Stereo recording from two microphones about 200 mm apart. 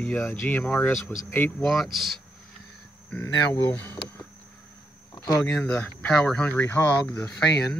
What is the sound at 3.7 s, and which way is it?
Speech, 10° left (ahead or behind).